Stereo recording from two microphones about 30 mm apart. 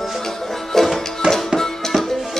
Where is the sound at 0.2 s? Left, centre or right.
Centre.